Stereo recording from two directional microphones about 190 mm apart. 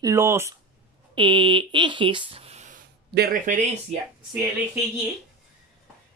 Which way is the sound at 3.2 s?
45° right (ahead or behind).